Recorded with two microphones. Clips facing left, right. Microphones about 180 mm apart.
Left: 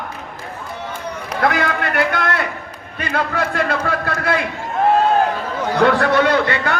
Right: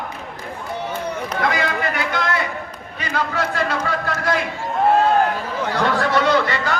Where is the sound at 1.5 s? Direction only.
60° left (ahead or behind).